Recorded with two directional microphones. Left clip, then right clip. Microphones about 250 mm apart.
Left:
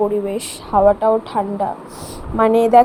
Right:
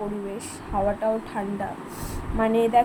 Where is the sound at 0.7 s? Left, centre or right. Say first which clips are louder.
Left 11 dB; left.